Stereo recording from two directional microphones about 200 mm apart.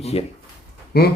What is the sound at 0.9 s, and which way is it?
Speech, 50° left (ahead or behind).